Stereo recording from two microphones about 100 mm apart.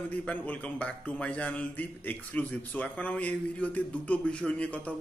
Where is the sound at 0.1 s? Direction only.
15° left (ahead or behind).